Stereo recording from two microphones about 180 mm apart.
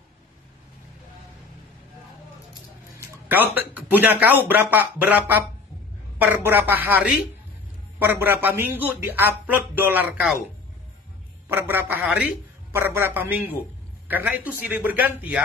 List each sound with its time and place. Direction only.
3.3 s speech: 10° right (ahead or behind)
11.4 s a man's voice: 10° right (ahead or behind)